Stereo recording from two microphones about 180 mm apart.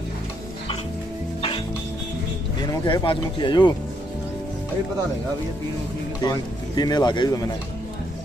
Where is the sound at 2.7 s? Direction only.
25° left (ahead or behind).